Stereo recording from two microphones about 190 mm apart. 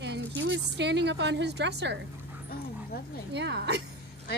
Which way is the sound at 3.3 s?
65° right (ahead or behind).